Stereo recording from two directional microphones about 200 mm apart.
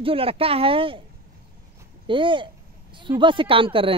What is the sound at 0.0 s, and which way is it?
Speech, 25° right (ahead or behind).